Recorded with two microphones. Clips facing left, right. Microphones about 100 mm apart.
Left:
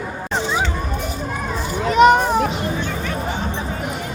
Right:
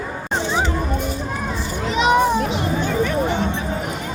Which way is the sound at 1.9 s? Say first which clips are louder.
Left 4 dB; 55° left (ahead or behind).